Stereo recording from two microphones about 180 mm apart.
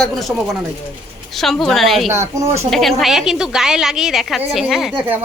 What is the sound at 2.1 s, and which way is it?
Speech, 15° right (ahead or behind).